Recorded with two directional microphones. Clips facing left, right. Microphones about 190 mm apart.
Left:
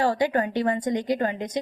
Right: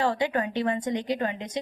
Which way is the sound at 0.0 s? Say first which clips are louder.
Left 3 dB; 40° left (ahead or behind).